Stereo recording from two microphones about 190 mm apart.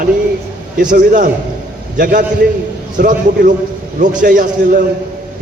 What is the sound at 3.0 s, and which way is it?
A man's voice, 45° right (ahead or behind).